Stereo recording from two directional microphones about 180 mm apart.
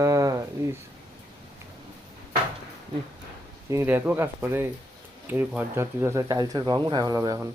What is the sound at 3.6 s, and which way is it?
Speech, 15° right (ahead or behind).